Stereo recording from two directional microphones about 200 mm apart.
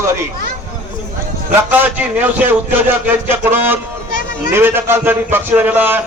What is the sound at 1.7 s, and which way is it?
Music, 10° right (ahead or behind).